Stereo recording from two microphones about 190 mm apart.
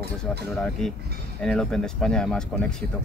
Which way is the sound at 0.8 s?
5° left (ahead or behind).